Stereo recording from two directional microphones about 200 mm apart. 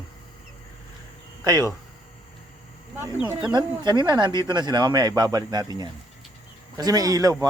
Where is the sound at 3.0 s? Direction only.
10° right (ahead or behind).